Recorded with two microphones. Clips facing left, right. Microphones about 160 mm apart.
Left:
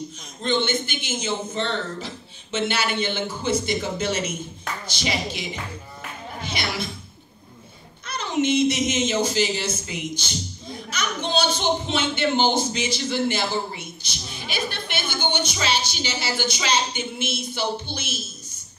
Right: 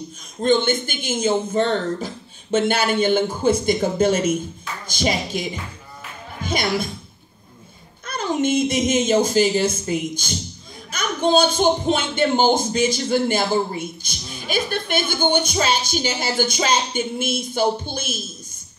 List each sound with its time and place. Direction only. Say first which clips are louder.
0.4 s speech: right 5 dB; 50° right (ahead or behind)
8.0 s speech: right 2 dB; 50° right (ahead or behind)